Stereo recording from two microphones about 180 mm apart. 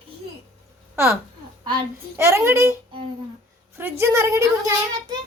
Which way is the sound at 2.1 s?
15° right (ahead or behind).